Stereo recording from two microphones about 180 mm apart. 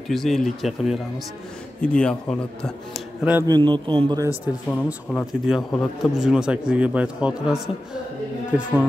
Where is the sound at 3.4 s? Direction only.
25° right (ahead or behind).